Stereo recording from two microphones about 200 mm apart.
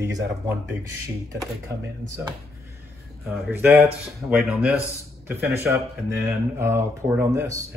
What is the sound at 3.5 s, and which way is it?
Speech, 10° right (ahead or behind).